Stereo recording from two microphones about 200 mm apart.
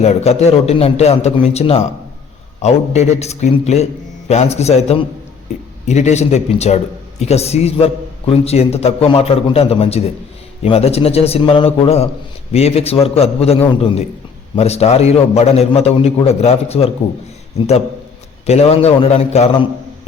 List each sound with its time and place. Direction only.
0.0 s a man's voice: 30° left (ahead or behind)
18.4 s a man's voice: 30° left (ahead or behind)